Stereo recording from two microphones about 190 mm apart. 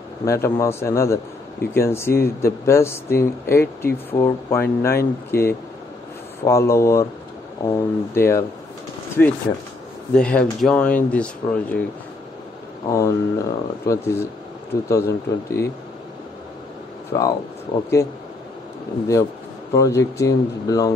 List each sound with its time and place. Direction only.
0.2 s speech: 15° left (ahead or behind)
12.9 s speech: 15° left (ahead or behind)
17.1 s speech: 20° left (ahead or behind)
19.7 s speech: 15° left (ahead or behind)